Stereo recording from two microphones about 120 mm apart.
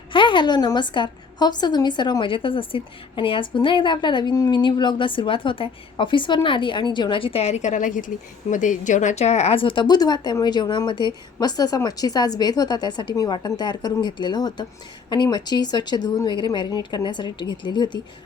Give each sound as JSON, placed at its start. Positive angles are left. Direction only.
{"t": 0.1, "sound": "a woman's voice", "side_deg": 40}